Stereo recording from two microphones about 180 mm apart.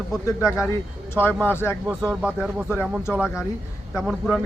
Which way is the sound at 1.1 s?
10° left (ahead or behind).